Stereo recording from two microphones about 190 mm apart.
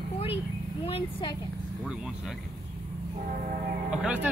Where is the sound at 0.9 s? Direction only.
25° left (ahead or behind).